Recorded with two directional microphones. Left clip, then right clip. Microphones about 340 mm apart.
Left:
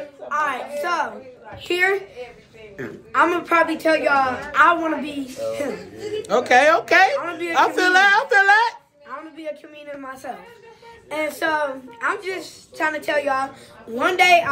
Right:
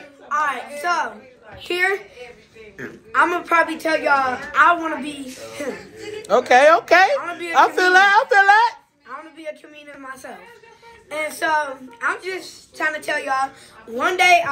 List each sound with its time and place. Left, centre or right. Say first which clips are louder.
0.3 s a woman's voice: right 1 dB; centre
6.2 s speech: right 2 dB; centre
7.2 s a woman's voice: left 1 dB; centre
7.5 s speech: right 3 dB; centre
9.4 s a woman's voice: left 1 dB; centre